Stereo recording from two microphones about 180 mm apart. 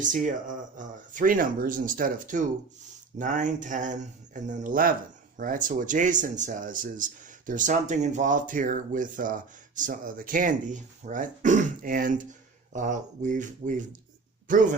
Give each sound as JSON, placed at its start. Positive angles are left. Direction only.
{"t": 0.0, "sound": "speech", "side_deg": -45}